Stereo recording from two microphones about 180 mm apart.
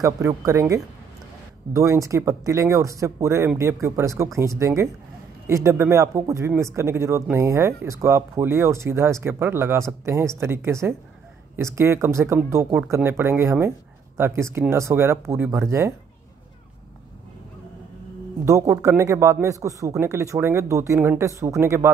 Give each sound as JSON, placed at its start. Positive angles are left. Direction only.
{"t": 0.5, "sound": "a man's voice", "side_deg": -15}
{"t": 18.4, "sound": "a man's voice", "side_deg": -15}